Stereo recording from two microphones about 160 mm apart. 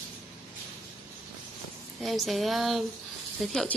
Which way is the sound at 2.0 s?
Centre (ahead or behind).